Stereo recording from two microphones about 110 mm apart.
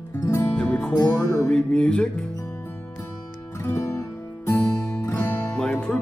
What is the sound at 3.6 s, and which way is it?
Music, 25° left (ahead or behind).